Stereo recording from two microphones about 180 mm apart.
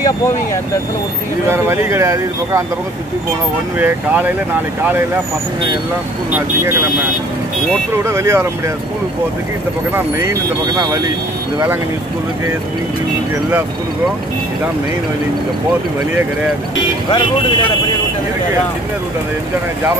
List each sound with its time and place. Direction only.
1.5 s speech: 15° right (ahead or behind)
3.8 s speech: 10° right (ahead or behind)
6.3 s speech: 15° right (ahead or behind)
8.0 s speech: 15° right (ahead or behind)
9.9 s speech: 15° right (ahead or behind)